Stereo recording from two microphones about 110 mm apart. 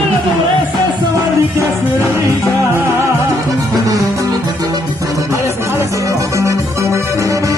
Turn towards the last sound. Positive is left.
turn(degrees=-25)  # may be behind; listen again after turning